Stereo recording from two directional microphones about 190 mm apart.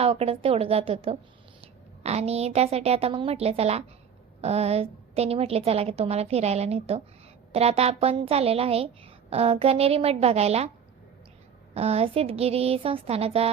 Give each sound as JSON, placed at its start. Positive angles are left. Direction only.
{"t": 0.0, "sound": "a woman's voice", "side_deg": -30}
{"t": 11.7, "sound": "a woman's voice", "side_deg": -35}